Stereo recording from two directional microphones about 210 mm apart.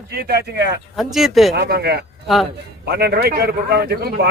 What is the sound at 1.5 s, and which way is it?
A man's voice, 50° right (ahead or behind).